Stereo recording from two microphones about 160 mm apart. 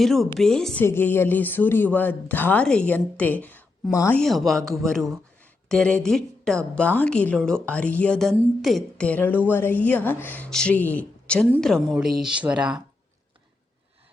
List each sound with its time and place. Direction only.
0.0 s a woman's voice: centre (ahead or behind); by 4.2 s 20° left (ahead or behind)
4.2 s a woman's voice: centre (ahead or behind)